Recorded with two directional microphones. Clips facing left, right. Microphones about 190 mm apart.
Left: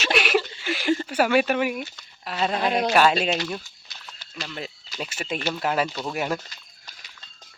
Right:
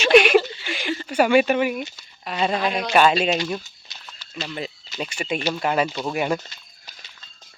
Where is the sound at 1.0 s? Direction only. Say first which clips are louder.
Right 7 dB; 5° left (ahead or behind).